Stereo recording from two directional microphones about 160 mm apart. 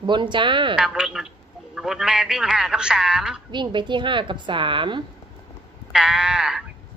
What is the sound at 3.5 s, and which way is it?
A woman's voice, 30° right (ahead or behind).